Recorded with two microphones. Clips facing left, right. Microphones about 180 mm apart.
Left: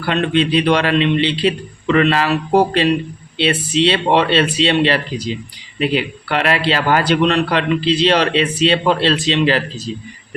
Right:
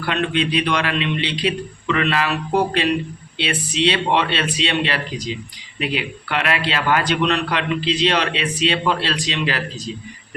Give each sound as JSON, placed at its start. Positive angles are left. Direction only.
{"t": 0.0, "sound": "a man's voice", "side_deg": 35}